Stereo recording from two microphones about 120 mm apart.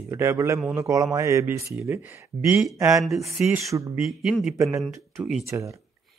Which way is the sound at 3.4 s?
25° right (ahead or behind).